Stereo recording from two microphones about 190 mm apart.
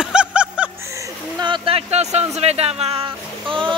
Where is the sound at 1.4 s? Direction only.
25° right (ahead or behind).